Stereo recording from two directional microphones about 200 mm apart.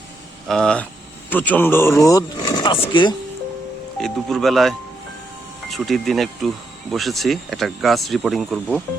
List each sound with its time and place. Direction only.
0.4 s speech: centre (ahead or behind); by 3.2 s 25° left (ahead or behind)
4.0 s speech: centre (ahead or behind)
5.7 s speech: centre (ahead or behind)